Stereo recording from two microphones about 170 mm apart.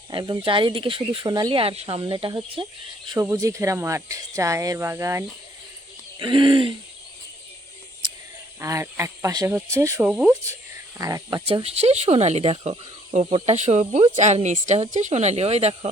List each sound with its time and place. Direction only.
0.1 s speech: 25° right (ahead or behind)
6.1 s speech: 30° right (ahead or behind)
8.6 s speech: 20° right (ahead or behind)
11.4 s speech: 35° right (ahead or behind)